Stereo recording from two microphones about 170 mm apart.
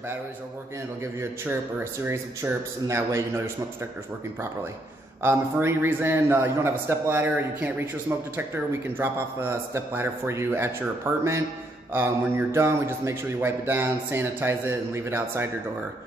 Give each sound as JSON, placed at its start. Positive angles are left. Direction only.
{"t": 2.0, "sound": "speech", "side_deg": -15}
{"t": 5.2, "sound": "speech", "side_deg": -15}
{"t": 8.9, "sound": "speech", "side_deg": -15}